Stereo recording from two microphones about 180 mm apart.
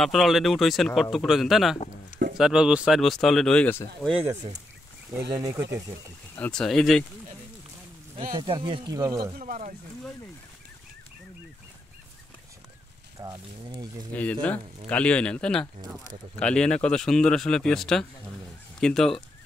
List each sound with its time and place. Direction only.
0.0 s speech: centre (ahead or behind)
4.1 s speech: 10° right (ahead or behind)
6.3 s speech: 5° left (ahead or behind)
8.4 s speech: 25° right (ahead or behind)
9.4 s speech: 45° right (ahead or behind)
13.2 s speech: 20° right (ahead or behind)
14.1 s speech: 10° left (ahead or behind)